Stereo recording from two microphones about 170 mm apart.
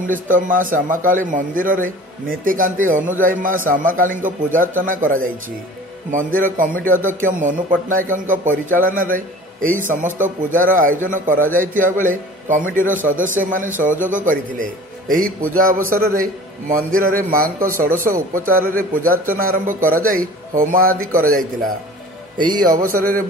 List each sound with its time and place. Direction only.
0.0 s speech: 50° right (ahead or behind)
22.4 s a man's voice: 25° right (ahead or behind)
22.8 s speech: 55° right (ahead or behind)